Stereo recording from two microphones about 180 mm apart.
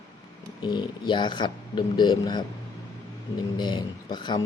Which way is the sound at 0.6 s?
25° left (ahead or behind).